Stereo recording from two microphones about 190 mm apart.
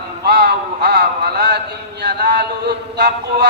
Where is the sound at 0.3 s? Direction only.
55° right (ahead or behind).